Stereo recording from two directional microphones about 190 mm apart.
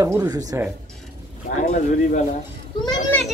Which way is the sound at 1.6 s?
40° left (ahead or behind).